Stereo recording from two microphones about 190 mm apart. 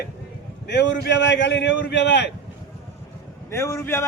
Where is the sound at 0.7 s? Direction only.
65° left (ahead or behind).